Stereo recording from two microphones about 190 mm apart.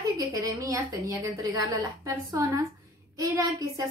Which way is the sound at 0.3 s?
15° right (ahead or behind).